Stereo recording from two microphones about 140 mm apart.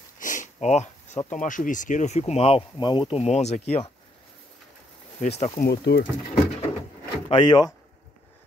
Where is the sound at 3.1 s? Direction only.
50° left (ahead or behind).